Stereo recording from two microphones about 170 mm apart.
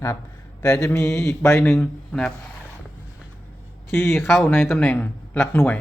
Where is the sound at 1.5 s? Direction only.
15° left (ahead or behind).